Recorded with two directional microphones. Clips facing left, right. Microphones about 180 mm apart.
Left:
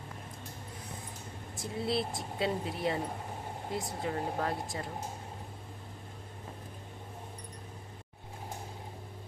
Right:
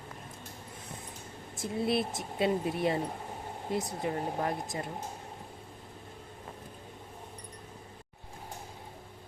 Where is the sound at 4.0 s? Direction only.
20° right (ahead or behind).